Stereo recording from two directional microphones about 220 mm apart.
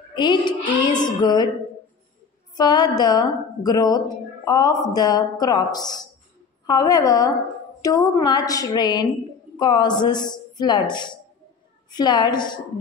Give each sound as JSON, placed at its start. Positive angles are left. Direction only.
{"t": 0.1, "sound": "speech", "side_deg": 20}
{"t": 2.5, "sound": "a woman's voice", "side_deg": 20}